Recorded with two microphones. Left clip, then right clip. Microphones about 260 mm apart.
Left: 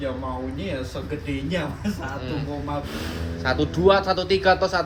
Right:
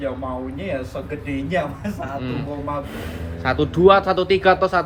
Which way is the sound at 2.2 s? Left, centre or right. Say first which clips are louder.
Right 3 dB; right.